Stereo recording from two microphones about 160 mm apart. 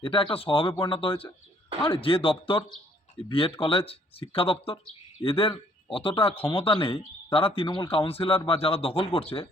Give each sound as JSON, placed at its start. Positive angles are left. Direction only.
{"t": 0.0, "sound": "speech", "side_deg": 35}